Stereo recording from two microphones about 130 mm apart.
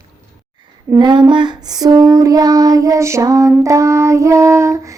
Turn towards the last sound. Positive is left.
turn(degrees=-25)  # may be behind; listen again after turning